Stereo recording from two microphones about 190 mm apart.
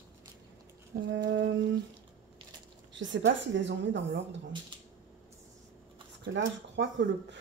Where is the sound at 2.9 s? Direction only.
75° right (ahead or behind).